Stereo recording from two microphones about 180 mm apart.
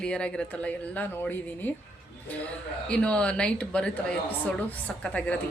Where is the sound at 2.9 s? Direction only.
5° left (ahead or behind).